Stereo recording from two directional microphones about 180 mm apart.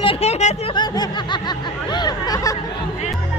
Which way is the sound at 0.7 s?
25° left (ahead or behind).